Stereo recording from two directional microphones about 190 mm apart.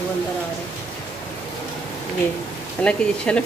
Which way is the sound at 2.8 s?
5° left (ahead or behind).